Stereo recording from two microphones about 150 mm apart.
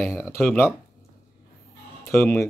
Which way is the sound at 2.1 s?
10° left (ahead or behind).